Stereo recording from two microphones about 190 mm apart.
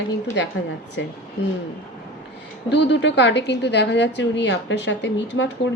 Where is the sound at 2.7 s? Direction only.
65° left (ahead or behind).